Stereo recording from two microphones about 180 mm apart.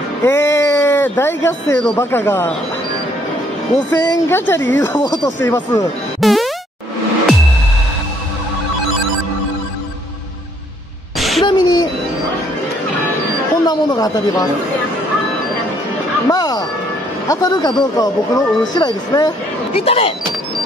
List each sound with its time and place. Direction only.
0.2 s speech: 15° left (ahead or behind)
3.9 s speech: 10° left (ahead or behind)
6.2 s music: centre (ahead or behind)
11.1 s a sound: centre (ahead or behind)
11.4 s music: 25° left (ahead or behind)
13.7 s speech: 20° left (ahead or behind)
16.3 s music: 20° left (ahead or behind)
17.3 s speech: 20° left (ahead or behind)
19.7 s speech: 35° left (ahead or behind)